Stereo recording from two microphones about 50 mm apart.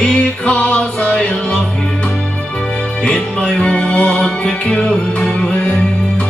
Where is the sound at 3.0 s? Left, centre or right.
Centre.